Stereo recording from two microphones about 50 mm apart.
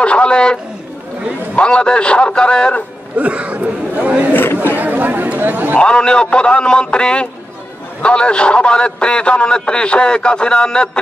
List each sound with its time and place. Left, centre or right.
0.0 s a man's voice: left
3.2 s a sound: right
4.3 s speech: left
4.7 s speech: right
5.8 s a man's voice: centre